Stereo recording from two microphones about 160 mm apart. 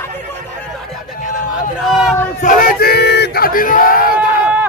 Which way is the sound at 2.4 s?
55° left (ahead or behind).